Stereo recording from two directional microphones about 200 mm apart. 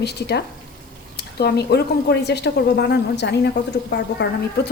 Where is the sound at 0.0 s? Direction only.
55° left (ahead or behind).